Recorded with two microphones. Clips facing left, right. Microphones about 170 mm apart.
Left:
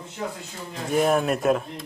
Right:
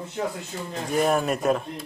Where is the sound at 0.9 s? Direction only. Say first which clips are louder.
Left 2 dB; 5° left (ahead or behind).